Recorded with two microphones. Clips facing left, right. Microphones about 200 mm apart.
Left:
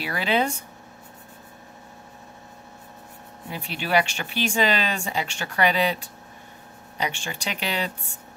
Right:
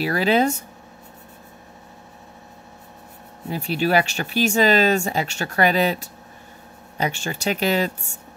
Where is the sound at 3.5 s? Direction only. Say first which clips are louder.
Right 4 dB; 40° right (ahead or behind).